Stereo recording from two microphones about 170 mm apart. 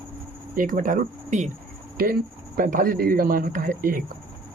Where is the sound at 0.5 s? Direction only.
50° right (ahead or behind).